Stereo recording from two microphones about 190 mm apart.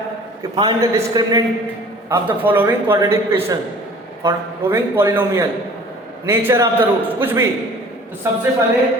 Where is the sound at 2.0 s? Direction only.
10° right (ahead or behind).